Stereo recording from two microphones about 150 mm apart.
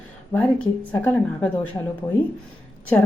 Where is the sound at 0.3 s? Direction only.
20° left (ahead or behind).